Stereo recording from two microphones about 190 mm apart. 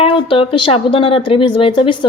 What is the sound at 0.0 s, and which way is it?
A woman's voice, 30° left (ahead or behind).